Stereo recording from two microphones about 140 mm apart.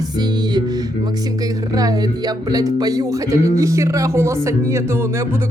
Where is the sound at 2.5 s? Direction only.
25° right (ahead or behind).